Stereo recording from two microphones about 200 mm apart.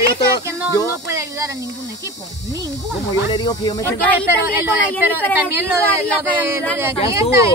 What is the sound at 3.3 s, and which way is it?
Speech, 20° left (ahead or behind).